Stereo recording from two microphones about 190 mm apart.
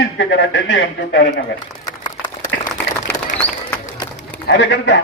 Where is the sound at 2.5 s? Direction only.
75° left (ahead or behind).